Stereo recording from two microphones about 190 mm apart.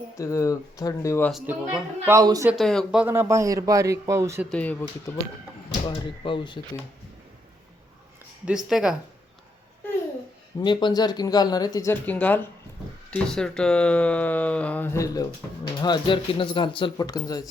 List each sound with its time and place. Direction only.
0.2 s speech: 15° left (ahead or behind)
1.3 s speech: 5° right (ahead or behind)
2.5 s speech: centre (ahead or behind); by 4.4 s 15° right (ahead or behind)
4.4 s speech: 5° left (ahead or behind)
5.8 s speech: 25° left (ahead or behind)
8.4 s speech: 5° right (ahead or behind)
10.6 s speech: 25° left (ahead or behind)